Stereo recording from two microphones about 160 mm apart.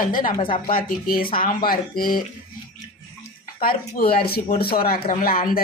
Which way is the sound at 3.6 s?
65° left (ahead or behind).